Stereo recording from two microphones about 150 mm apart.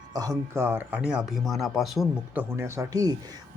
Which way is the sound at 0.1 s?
25° right (ahead or behind).